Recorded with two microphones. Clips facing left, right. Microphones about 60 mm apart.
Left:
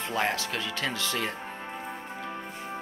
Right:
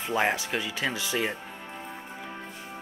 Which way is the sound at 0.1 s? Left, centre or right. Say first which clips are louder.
Right 3 dB; centre.